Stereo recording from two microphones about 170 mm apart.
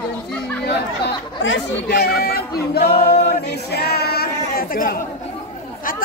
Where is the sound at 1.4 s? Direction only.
80° left.